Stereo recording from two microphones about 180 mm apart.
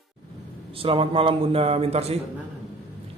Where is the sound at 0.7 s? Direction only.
30° right (ahead or behind).